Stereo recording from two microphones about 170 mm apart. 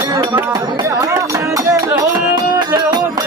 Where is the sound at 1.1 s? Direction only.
20° right (ahead or behind).